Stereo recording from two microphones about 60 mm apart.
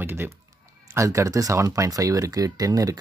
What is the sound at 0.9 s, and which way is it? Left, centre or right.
Speech, right.